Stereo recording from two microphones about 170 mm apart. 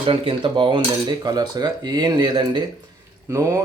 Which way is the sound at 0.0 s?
30° right (ahead or behind).